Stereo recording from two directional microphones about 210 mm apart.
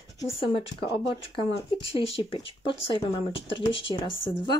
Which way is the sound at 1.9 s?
25° left (ahead or behind).